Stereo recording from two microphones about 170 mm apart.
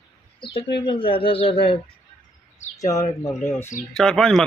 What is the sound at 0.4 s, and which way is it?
Speech, 30° left (ahead or behind).